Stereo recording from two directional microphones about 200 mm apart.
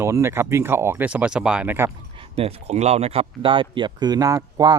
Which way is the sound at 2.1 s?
30° right (ahead or behind).